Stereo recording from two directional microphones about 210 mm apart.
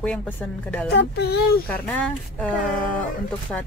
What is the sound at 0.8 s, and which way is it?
Speech, 50° left (ahead or behind).